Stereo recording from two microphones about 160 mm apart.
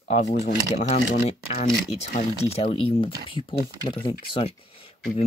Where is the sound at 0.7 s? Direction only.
40° left (ahead or behind).